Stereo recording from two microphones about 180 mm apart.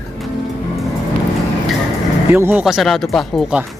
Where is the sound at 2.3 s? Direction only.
10° right (ahead or behind).